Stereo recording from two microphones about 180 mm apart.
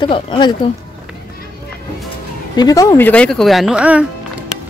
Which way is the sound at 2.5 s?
20° left (ahead or behind).